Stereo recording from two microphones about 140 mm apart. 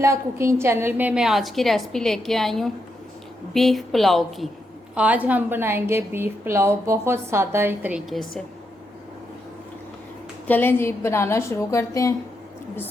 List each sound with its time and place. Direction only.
0.0 s a woman's voice: 20° right (ahead or behind); by 4.4 s centre (ahead or behind)
4.9 s a woman's voice: 10° right (ahead or behind)
10.4 s a woman's voice: 15° left (ahead or behind)